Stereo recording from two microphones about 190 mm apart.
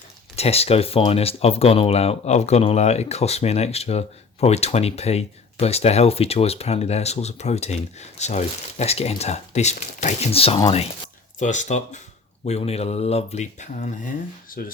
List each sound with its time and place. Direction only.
0.3 s speech: 30° left (ahead or behind)